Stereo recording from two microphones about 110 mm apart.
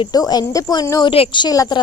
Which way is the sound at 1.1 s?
55° left (ahead or behind).